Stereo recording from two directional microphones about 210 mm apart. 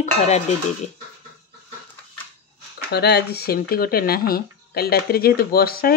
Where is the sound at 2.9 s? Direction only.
50° left (ahead or behind).